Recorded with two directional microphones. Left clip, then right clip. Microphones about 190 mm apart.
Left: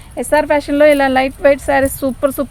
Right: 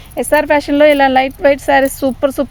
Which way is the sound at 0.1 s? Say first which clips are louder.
Right 2 dB; 45° right (ahead or behind).